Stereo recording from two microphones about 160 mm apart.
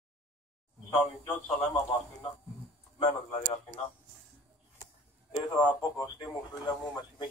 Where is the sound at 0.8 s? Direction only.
15° left (ahead or behind).